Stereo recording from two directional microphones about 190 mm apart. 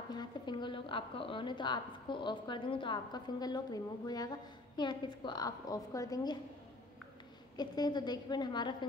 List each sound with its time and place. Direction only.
0.1 s a woman's voice: 25° left (ahead or behind)
7.5 s a woman's voice: 20° left (ahead or behind)